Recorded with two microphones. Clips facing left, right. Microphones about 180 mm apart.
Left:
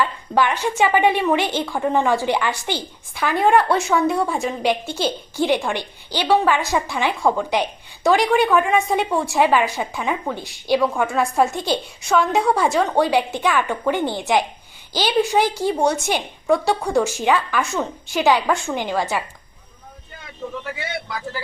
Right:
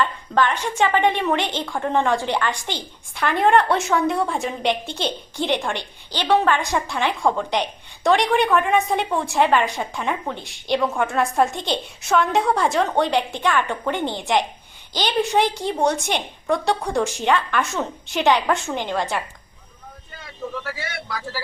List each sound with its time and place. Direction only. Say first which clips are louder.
0.0 s a woman's voice: left 1 dB; 10° left (ahead or behind)
20.7 s a man's voice: left 2 dB; 20° left (ahead or behind)